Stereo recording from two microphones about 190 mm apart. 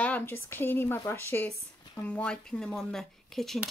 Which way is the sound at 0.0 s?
10° left (ahead or behind).